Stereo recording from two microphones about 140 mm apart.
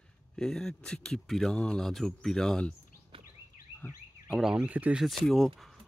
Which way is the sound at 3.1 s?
40° right (ahead or behind).